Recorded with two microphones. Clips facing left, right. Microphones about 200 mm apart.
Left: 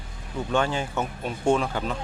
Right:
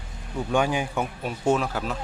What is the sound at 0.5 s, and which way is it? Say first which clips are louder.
Speech: right 1 dB; 15° right (ahead or behind).